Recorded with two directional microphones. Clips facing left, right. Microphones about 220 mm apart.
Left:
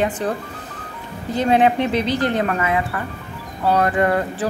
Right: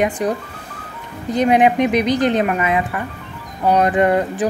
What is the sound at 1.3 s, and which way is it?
A woman's voice, 15° right (ahead or behind).